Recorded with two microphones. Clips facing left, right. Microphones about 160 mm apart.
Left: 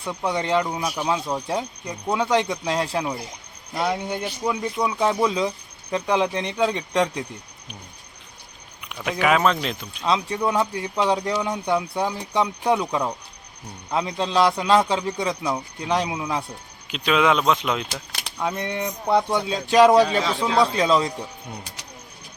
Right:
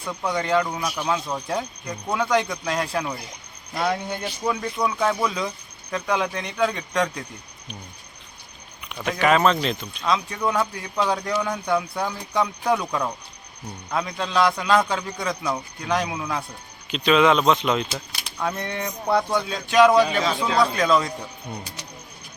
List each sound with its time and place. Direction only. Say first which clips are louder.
0.0 s speech: left 1 dB; 20° left (ahead or behind)
0.9 s speech: left 1 dB; 10° left (ahead or behind)
1.9 s speech: left 1 dB; 20° left (ahead or behind)
3.8 s speech: left 1 dB; 10° left (ahead or behind)
8.9 s speech: right 1 dB; 5° left (ahead or behind)
10.1 s speech: left 1 dB; 25° left (ahead or behind)
16.9 s speech: right 2 dB; 5° left (ahead or behind); by 21.1 s 25° left (ahead or behind)